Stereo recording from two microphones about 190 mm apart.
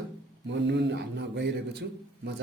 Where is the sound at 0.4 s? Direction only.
65° right (ahead or behind).